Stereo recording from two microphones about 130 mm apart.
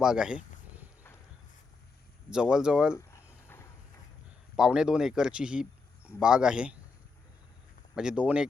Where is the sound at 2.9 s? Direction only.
20° left (ahead or behind).